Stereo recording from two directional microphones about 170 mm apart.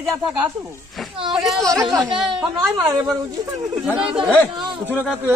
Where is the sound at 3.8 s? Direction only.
5° right (ahead or behind).